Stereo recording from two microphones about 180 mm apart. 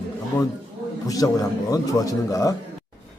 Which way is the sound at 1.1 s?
20° left (ahead or behind).